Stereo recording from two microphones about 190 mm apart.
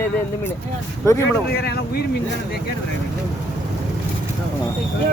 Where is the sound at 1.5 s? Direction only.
60° left (ahead or behind).